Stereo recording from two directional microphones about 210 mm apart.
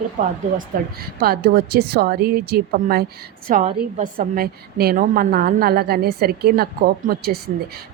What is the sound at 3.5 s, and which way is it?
A woman's voice, 35° right (ahead or behind).